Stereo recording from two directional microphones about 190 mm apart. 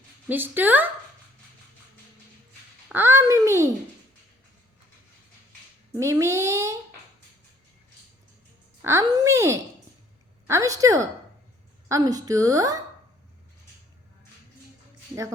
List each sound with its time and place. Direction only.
0.3 s a child's voice: 10° right (ahead or behind)
2.9 s a child's voice: 10° right (ahead or behind)
6.0 s a child's voice: 15° right (ahead or behind)
8.8 s a child's voice: 15° right (ahead or behind)